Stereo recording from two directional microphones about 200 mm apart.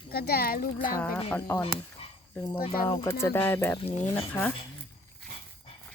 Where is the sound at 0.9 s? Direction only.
10° left (ahead or behind).